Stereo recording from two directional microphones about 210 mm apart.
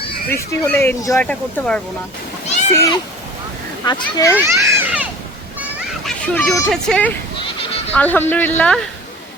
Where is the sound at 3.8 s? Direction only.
15° left (ahead or behind).